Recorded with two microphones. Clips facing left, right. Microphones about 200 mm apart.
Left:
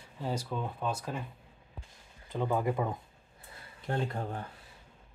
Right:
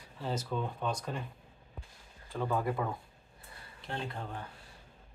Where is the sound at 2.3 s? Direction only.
20° left (ahead or behind).